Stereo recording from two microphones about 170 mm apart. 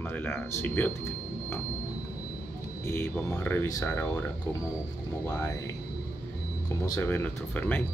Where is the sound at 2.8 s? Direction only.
15° left (ahead or behind).